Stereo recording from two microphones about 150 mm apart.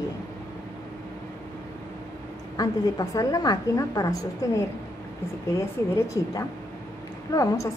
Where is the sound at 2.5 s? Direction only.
25° left (ahead or behind).